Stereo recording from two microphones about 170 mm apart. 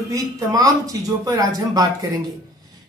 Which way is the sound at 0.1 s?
20° right (ahead or behind).